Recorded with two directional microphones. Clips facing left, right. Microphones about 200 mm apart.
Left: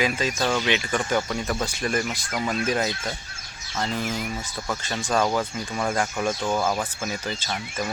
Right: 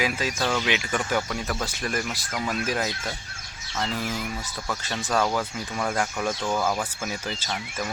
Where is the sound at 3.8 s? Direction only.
20° left (ahead or behind).